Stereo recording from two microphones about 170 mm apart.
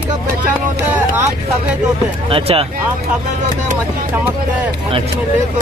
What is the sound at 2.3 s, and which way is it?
Speech, 35° right (ahead or behind).